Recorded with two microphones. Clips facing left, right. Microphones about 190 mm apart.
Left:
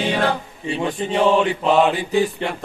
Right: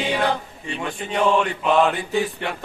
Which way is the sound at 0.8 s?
20° left (ahead or behind).